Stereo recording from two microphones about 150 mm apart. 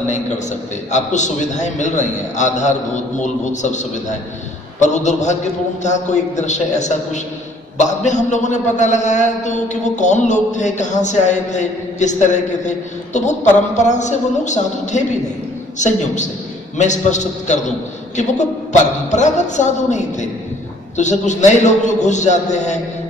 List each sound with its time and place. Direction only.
0.9 s a man's voice: 50° left (ahead or behind)